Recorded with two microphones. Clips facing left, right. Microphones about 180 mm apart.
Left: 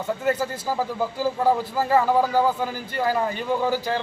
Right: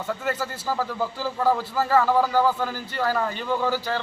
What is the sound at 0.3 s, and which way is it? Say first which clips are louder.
Speech: left 5 dB; 15° left (ahead or behind).